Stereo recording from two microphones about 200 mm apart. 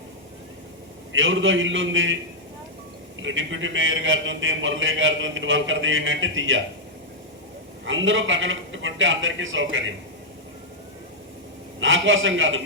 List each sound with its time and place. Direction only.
1.1 s a man's voice: 70° right (ahead or behind)
3.2 s a man's voice: 70° right (ahead or behind)
7.9 s a man's voice: 70° right (ahead or behind)
11.8 s a man's voice: 75° right (ahead or behind)